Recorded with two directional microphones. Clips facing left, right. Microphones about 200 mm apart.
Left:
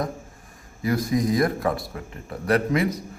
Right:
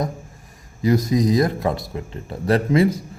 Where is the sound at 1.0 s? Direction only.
20° right (ahead or behind).